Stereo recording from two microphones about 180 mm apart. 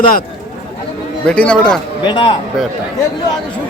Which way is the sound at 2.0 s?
25° left (ahead or behind).